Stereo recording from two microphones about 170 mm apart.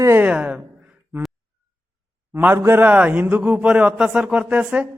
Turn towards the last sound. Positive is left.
turn(degrees=-10)  # may be behind; listen again after turning